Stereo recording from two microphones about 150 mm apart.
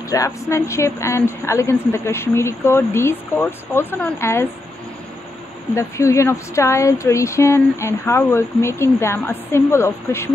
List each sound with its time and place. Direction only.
0.1 s speech: 20° left (ahead or behind)
5.8 s speech: 20° left (ahead or behind)